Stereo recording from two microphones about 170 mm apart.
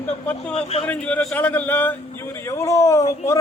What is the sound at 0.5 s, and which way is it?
Speech, 35° left (ahead or behind).